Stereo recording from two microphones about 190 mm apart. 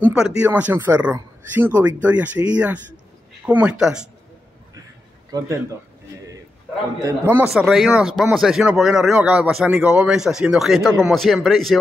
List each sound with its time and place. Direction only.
0.0 s speech: 5° right (ahead or behind)
5.3 s a man's voice: 20° right (ahead or behind)
7.0 s speech: 15° right (ahead or behind)